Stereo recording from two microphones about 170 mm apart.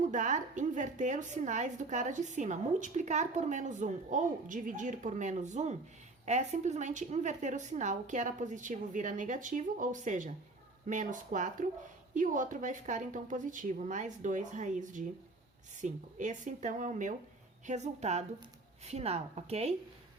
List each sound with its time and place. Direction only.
0.0 s a woman's voice: 45° right (ahead or behind)